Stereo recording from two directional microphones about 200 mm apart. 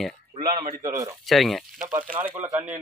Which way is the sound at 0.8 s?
15° right (ahead or behind).